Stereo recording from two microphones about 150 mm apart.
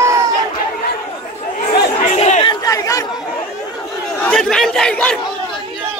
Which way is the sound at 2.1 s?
45° left (ahead or behind).